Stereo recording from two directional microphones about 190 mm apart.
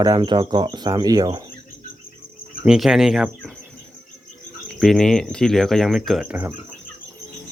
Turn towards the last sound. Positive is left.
turn(degrees=-10)  # may be behind; listen again after turning